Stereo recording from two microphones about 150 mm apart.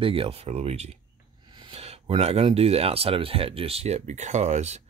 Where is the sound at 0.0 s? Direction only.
40° right (ahead or behind).